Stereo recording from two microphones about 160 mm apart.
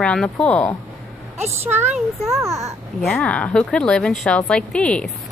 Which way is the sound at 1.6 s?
15° right (ahead or behind).